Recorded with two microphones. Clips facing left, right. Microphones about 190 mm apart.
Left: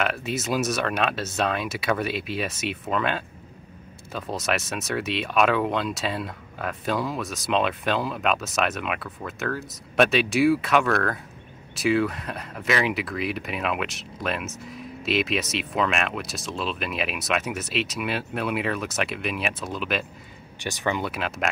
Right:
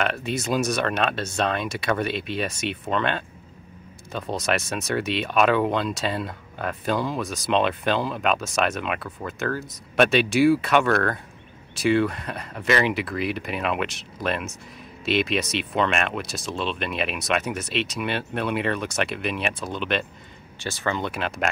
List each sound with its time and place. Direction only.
0.0 s speech: centre (ahead or behind)
20.6 s speech: 15° left (ahead or behind)
21.0 s speech: centre (ahead or behind)